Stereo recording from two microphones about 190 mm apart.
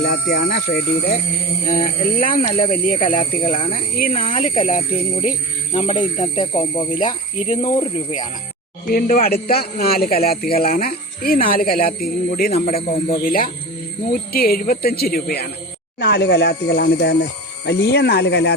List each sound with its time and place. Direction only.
0.0 s a man's voice: 50° left (ahead or behind)
4.2 s speech: 30° left (ahead or behind)
7.0 s a man's voice: 40° left (ahead or behind)
7.8 s speech: 25° left (ahead or behind)
8.9 s a man's voice: 50° left (ahead or behind)
12.5 s speech: 35° left (ahead or behind)
12.7 s a man's voice: 50° left (ahead or behind)